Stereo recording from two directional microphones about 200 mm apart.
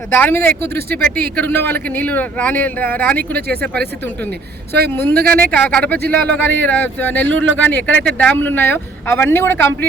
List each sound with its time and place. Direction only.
0.1 s speech: 10° left (ahead or behind)
3.4 s speech: 50° right (ahead or behind)
3.8 s speech: 10° left (ahead or behind)
4.3 s speech: 55° right (ahead or behind)
4.9 s speech: 10° left (ahead or behind)
5.1 s speech: 50° right (ahead or behind)
5.5 s speech: 5° left (ahead or behind)